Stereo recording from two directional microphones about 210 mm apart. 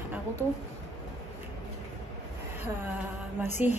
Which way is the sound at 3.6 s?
5° right (ahead or behind).